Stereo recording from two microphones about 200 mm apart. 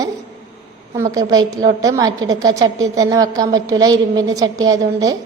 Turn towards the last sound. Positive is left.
turn(degrees=-15)  # may be behind; listen again after turning